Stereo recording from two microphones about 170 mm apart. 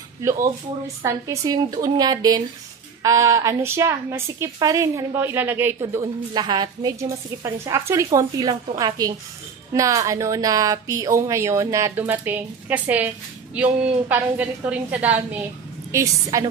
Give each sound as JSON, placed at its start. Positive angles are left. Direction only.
{"t": 1.0, "sound": "a woman's voice", "side_deg": -20}
{"t": 15.9, "sound": "a woman's voice", "side_deg": -20}